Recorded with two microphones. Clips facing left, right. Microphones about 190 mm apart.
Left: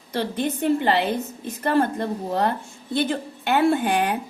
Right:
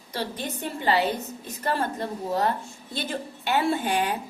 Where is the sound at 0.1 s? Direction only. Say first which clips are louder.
Left 7 dB; 55° left (ahead or behind).